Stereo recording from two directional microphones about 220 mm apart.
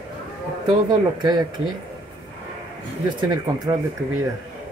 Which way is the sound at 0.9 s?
20° right (ahead or behind).